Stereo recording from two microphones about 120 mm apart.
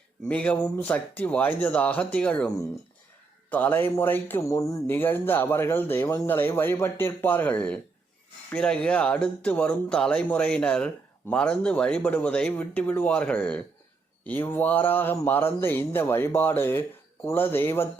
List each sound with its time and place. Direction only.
0.3 s speech: 10° left (ahead or behind)